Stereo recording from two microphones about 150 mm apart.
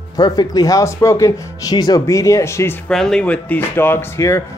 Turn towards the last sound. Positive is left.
turn(degrees=15)  # may be behind; listen again after turning